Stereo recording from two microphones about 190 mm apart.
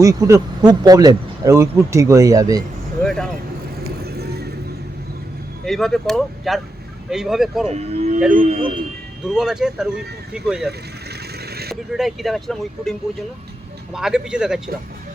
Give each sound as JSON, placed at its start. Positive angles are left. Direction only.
{"t": 0.0, "sound": "speech", "side_deg": -15}
{"t": 3.0, "sound": "a sound", "side_deg": 5}
{"t": 4.0, "sound": "vehicle", "side_deg": -55}
{"t": 5.6, "sound": "speech", "side_deg": 0}
{"t": 7.7, "sound": "speech", "side_deg": -35}
{"t": 9.2, "sound": "speech", "side_deg": -5}
{"t": 10.7, "sound": "a sound", "side_deg": -55}
{"t": 11.7, "sound": "speech", "side_deg": 0}